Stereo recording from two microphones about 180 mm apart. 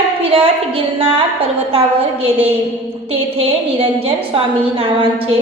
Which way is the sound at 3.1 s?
30° right (ahead or behind).